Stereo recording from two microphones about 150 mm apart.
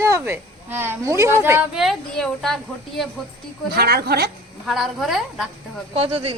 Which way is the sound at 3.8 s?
90° right.